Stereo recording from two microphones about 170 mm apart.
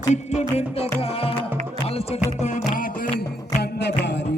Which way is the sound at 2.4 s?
50° left (ahead or behind).